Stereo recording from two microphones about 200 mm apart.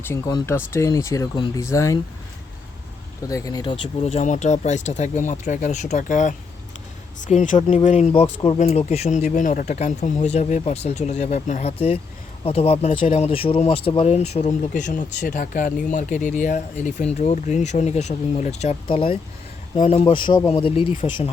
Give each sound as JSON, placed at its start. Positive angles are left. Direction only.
{"t": 0.0, "sound": "speech", "side_deg": 15}
{"t": 3.2, "sound": "speech", "side_deg": 15}